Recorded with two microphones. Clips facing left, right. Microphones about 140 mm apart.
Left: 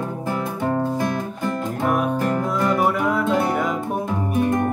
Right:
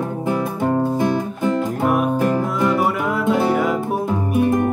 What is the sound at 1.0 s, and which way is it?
Music, 5° right (ahead or behind).